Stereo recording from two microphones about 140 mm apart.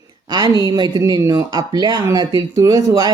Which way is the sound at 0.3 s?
30° right (ahead or behind).